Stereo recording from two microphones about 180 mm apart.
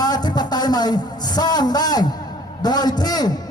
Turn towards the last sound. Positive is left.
turn(degrees=20)  # may be behind; listen again after turning